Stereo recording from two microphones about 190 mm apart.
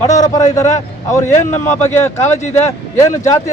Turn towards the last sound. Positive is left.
turn(degrees=15)  # may be behind; listen again after turning